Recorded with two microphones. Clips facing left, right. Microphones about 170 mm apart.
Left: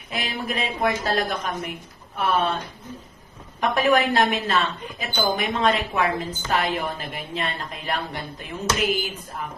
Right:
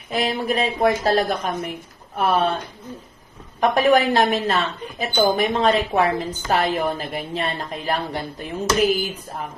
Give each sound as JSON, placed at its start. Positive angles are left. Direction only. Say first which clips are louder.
{"t": 0.1, "sound": "a woman's voice", "louder": "right 7 dB", "side_deg": -35}
{"t": 3.6, "sound": "a woman's voice", "louder": "right 4 dB", "side_deg": -35}